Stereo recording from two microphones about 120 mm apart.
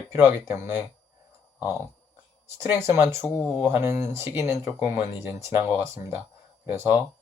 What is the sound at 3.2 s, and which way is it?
Speech, 30° left (ahead or behind).